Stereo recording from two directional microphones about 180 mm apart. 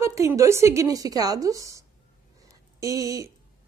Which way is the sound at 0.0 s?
15° right (ahead or behind).